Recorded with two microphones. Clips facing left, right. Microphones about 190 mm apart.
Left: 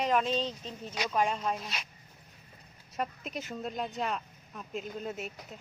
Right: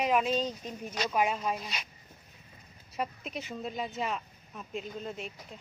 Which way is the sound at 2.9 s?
Centre (ahead or behind).